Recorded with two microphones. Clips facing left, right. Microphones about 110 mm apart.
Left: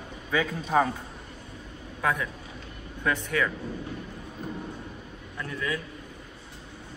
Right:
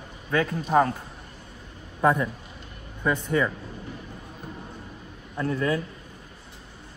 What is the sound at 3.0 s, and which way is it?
Speech, 15° right (ahead or behind).